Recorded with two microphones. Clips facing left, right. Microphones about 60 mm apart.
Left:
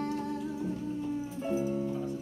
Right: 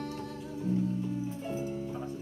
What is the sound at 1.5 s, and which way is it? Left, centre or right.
Music, centre.